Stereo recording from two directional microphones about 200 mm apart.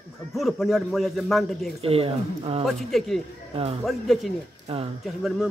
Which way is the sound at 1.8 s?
30° right (ahead or behind).